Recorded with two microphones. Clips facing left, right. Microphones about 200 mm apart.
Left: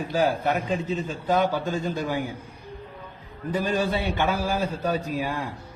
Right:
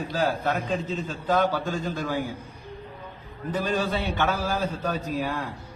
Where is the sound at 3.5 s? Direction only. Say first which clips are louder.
Left 2 dB; 10° left (ahead or behind).